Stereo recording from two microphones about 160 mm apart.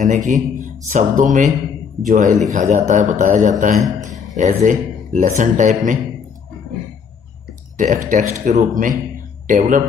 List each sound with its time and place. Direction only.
0.0 s a man's voice: 50° right (ahead or behind)
7.7 s a man's voice: 55° right (ahead or behind)